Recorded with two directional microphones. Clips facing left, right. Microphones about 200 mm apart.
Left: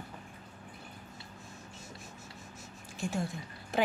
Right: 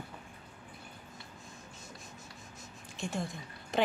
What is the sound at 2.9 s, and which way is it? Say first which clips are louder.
Speech: left 2 dB; 5° left (ahead or behind).